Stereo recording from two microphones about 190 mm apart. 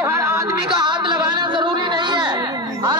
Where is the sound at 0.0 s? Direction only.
15° right (ahead or behind).